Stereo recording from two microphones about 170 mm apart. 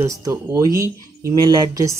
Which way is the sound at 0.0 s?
15° right (ahead or behind).